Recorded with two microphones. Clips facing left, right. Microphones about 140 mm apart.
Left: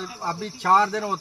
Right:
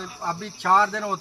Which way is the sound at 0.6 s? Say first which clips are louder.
Left 1 dB; 10° left (ahead or behind).